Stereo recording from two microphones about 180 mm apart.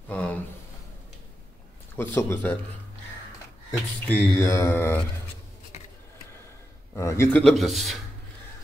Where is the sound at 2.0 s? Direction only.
15° left (ahead or behind).